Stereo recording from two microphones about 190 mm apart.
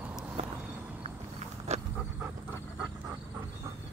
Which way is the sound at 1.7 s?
35° right (ahead or behind).